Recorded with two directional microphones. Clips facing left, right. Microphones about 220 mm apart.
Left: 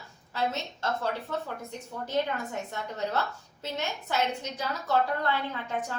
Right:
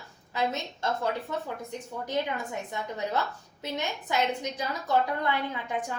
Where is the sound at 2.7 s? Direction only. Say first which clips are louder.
Right 1 dB; 15° right (ahead or behind).